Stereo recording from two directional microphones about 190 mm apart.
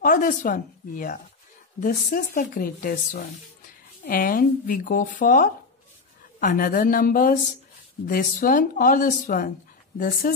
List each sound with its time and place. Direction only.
0.0 s speech: 45° left (ahead or behind)